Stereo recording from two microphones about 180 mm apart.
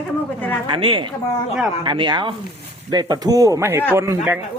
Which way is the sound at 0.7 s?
30° right (ahead or behind).